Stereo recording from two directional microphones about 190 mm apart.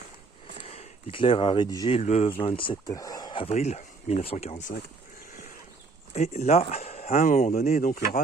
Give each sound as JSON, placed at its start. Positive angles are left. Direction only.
{"t": 0.7, "sound": "speech", "side_deg": 30}
{"t": 2.0, "sound": "speech", "side_deg": 35}
{"t": 6.1, "sound": "speech", "side_deg": 35}